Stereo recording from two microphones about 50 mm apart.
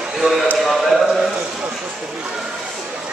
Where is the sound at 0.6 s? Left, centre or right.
Centre.